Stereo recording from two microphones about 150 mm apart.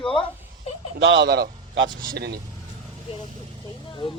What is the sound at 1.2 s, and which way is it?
A man's voice, 90° right.